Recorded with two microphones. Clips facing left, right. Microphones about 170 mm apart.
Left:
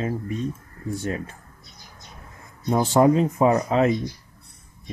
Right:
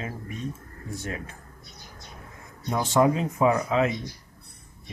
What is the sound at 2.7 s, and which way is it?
Speech, 35° left (ahead or behind).